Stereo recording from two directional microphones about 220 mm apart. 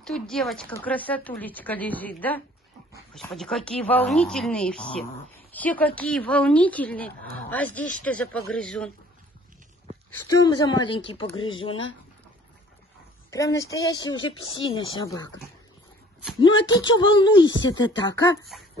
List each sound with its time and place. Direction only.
0.0 s a woman's voice: centre (ahead or behind)
10.1 s speech: 15° left (ahead or behind)
13.3 s a woman's voice: 15° left (ahead or behind)
16.6 s speech: 20° left (ahead or behind)